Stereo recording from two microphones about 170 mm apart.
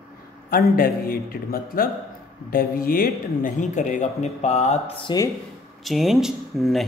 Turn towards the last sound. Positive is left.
turn(degrees=0)  # may be behind; listen again after turning